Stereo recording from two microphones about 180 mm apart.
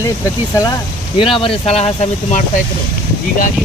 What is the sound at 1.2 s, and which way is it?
Speech, 30° left (ahead or behind).